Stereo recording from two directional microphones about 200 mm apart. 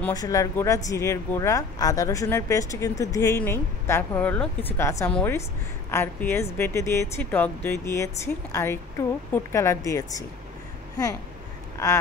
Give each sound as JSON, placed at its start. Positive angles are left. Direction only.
{"t": 0.1, "sound": "speech", "side_deg": 15}